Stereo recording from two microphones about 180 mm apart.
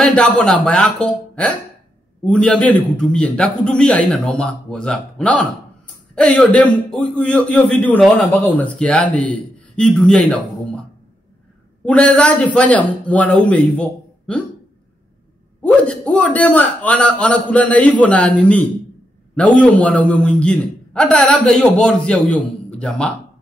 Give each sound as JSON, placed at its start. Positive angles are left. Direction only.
{"t": 0.0, "sound": "a man's voice", "side_deg": 5}
{"t": 11.8, "sound": "a man's voice", "side_deg": 5}
{"t": 15.6, "sound": "a man's voice", "side_deg": 5}